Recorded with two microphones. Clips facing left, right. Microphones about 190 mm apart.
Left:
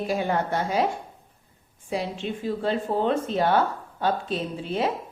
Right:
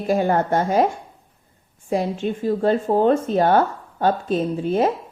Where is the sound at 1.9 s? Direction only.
45° right (ahead or behind).